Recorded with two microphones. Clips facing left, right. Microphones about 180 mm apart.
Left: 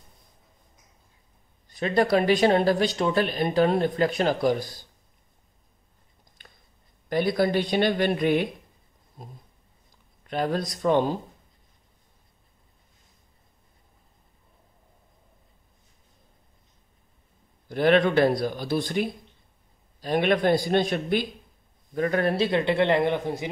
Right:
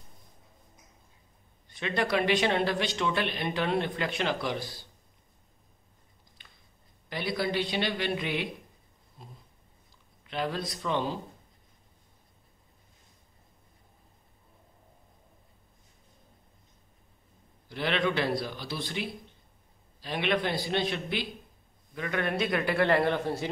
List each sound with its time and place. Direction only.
1.7 s speech: 40° left (ahead or behind)
6.4 s chewing: 45° left (ahead or behind)
7.1 s speech: 45° left (ahead or behind)
17.6 s a man's voice: 45° left (ahead or behind); by 23.5 s 15° left (ahead or behind)